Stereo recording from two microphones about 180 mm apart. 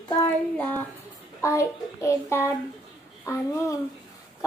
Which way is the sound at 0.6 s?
10° left (ahead or behind).